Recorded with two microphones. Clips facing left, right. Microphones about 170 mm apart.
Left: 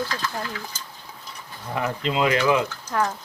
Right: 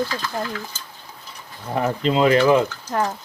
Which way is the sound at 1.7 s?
35° right (ahead or behind).